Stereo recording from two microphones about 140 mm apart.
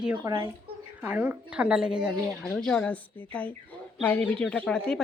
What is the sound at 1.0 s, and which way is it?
A woman's voice, 10° right (ahead or behind).